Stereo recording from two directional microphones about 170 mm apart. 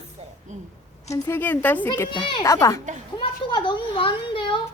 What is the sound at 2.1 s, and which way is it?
A child's voice, 25° left (ahead or behind).